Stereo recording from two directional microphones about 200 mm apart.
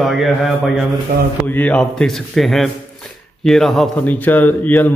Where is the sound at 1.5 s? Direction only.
5° left (ahead or behind).